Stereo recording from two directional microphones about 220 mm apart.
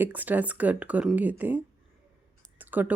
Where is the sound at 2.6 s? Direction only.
10° right (ahead or behind).